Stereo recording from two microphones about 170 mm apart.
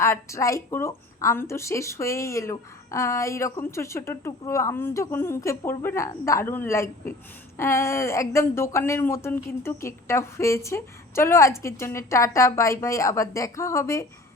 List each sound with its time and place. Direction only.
0.0 s speech: 15° left (ahead or behind)